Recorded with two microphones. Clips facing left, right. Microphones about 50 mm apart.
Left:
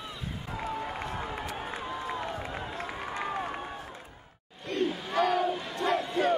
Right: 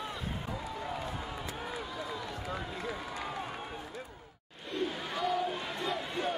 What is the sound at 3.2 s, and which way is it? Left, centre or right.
Run, left.